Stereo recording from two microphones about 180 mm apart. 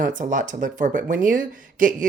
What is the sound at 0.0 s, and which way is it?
Speech, 45° right (ahead or behind).